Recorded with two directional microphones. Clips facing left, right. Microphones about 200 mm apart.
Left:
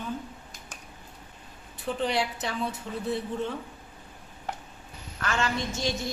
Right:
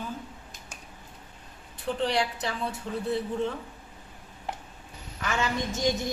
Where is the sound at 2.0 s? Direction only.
Centre (ahead or behind).